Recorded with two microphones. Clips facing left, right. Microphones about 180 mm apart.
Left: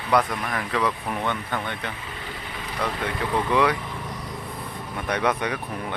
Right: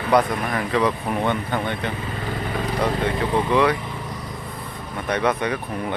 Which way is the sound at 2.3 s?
50° right (ahead or behind).